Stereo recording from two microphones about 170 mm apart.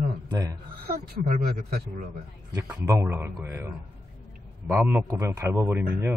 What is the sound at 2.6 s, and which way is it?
A man's voice, 15° right (ahead or behind).